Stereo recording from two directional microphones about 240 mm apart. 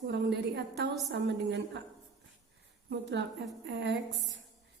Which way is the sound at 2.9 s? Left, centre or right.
Right.